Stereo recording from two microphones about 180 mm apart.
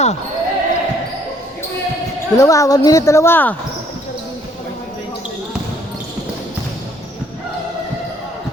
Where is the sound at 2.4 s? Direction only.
20° left (ahead or behind).